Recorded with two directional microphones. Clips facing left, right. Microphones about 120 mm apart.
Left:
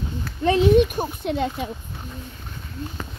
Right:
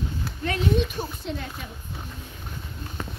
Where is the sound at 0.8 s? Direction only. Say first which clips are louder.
Left 8 dB; 60° left (ahead or behind).